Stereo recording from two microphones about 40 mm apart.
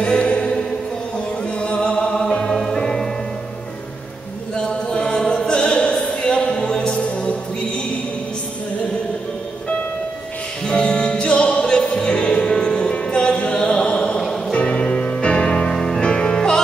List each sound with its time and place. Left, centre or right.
0.0 s music: left
2.5 s music: centre
2.8 s music: centre
4.6 s choir: left
7.0 s music: left
10.7 s music: left